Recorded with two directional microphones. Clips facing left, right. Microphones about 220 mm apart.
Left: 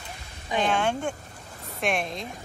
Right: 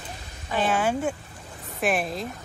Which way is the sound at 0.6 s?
5° right (ahead or behind).